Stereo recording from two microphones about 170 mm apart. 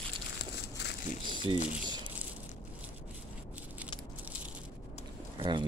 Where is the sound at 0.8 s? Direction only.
80° left.